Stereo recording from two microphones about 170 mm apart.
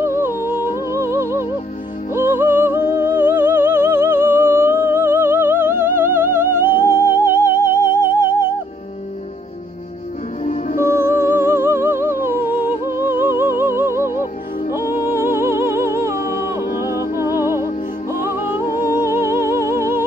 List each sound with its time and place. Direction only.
0.0 s music: 15° right (ahead or behind)
10.4 s music: 45° left (ahead or behind)
10.8 s music: 15° right (ahead or behind)
18.2 s music: 15° right (ahead or behind)